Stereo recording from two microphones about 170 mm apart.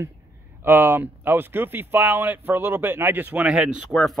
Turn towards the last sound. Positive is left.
turn(degrees=0)  # may be behind; listen again after turning